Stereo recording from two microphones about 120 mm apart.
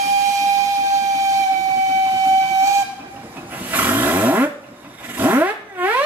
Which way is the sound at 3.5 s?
15° right (ahead or behind).